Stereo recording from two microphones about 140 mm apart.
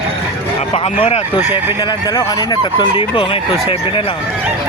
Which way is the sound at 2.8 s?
35° left (ahead or behind).